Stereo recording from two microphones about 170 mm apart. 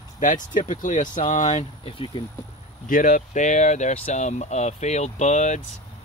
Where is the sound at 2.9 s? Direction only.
55° left (ahead or behind).